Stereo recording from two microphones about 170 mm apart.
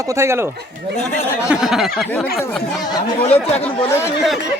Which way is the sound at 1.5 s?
Centre (ahead or behind).